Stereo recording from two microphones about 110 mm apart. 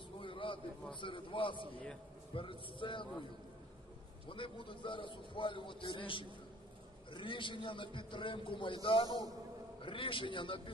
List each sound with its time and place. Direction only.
0.2 s a sound: 50° left (ahead or behind)
1.0 s a man's voice: 50° left (ahead or behind)
4.3 s a man's voice: 50° left (ahead or behind)